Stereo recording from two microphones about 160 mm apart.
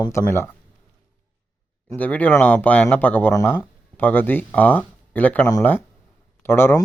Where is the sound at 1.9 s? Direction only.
10° left (ahead or behind).